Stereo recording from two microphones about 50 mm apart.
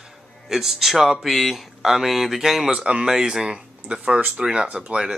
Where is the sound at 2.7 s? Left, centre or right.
Right.